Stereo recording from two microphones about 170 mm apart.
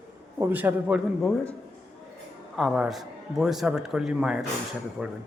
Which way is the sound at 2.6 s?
Centre (ahead or behind).